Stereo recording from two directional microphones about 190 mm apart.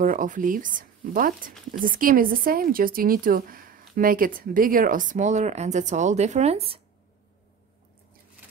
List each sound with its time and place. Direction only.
0.0 s speech: 45° right (ahead or behind)